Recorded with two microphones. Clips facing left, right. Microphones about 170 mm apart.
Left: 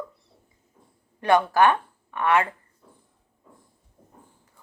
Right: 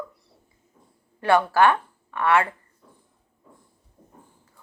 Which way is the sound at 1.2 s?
20° left (ahead or behind).